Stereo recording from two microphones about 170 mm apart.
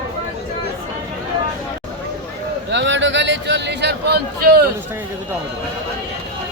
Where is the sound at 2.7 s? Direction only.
90° right; by 4.6 s 70° right (ahead or behind).